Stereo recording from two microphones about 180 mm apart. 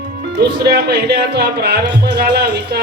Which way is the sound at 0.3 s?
65° right (ahead or behind).